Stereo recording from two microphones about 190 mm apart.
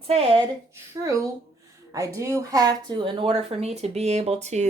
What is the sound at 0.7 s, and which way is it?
A woman's voice, 15° right (ahead or behind).